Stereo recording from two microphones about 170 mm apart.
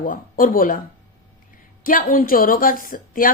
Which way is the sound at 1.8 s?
55° left (ahead or behind).